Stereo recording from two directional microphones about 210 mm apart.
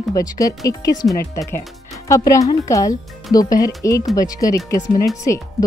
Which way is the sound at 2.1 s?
15° left (ahead or behind).